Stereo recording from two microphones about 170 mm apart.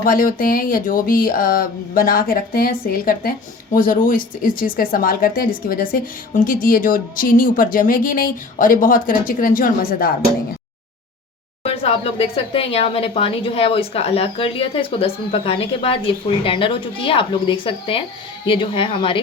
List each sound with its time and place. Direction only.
0.0 s speech: 55° left (ahead or behind)
11.6 s speech: 35° left (ahead or behind)